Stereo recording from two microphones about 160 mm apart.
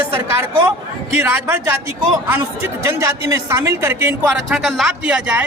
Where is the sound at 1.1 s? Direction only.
10° right (ahead or behind).